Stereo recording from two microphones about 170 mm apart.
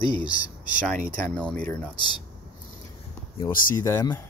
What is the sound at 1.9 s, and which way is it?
Speech, 25° left (ahead or behind).